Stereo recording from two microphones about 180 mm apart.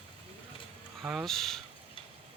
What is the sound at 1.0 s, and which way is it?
Speech, centre (ahead or behind).